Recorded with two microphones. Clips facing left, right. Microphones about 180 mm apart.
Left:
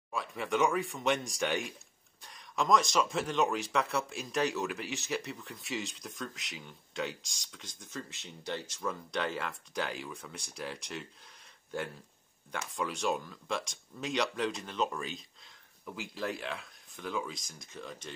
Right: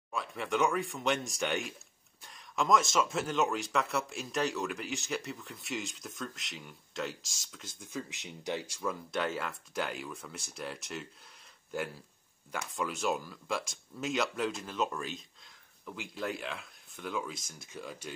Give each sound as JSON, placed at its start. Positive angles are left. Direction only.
{"t": 0.1, "sound": "speech", "side_deg": 0}